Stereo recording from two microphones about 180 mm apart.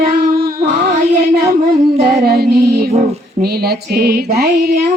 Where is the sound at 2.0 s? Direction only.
60° right (ahead or behind).